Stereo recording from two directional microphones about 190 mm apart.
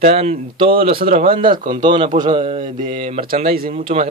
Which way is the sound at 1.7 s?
25° right (ahead or behind).